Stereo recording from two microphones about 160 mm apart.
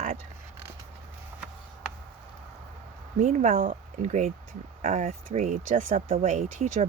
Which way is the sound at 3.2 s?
50° right (ahead or behind).